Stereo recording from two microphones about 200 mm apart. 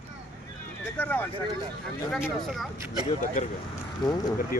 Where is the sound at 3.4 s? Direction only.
40° left (ahead or behind).